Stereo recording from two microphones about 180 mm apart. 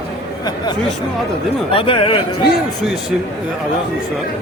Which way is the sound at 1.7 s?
30° left (ahead or behind).